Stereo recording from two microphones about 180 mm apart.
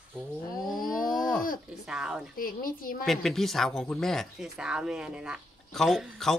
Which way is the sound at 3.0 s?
Centre (ahead or behind).